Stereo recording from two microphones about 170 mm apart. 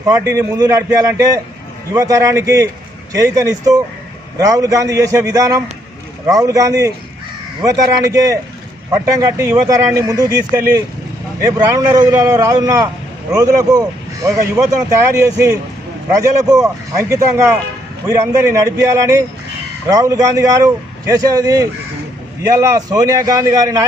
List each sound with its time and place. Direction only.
0.0 s a man's voice: 20° right (ahead or behind)